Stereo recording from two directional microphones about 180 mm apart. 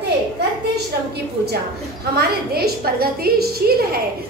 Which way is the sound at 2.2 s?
60° right (ahead or behind).